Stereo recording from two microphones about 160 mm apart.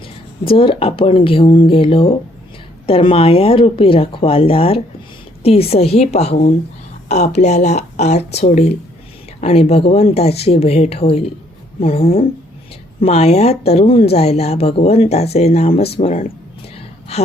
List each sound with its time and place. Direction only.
0.0 s speech: 35° left (ahead or behind)